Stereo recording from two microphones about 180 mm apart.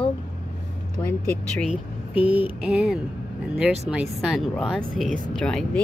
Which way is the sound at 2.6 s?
Centre (ahead or behind).